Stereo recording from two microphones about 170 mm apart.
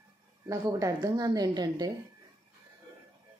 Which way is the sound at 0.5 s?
20° right (ahead or behind).